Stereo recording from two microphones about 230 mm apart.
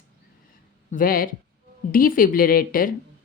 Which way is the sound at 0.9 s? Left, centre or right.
Left.